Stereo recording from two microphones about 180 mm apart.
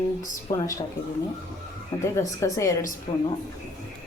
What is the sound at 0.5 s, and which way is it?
Speech, 15° left (ahead or behind).